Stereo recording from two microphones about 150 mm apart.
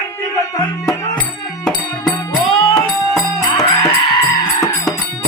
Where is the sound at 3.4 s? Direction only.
20° left (ahead or behind).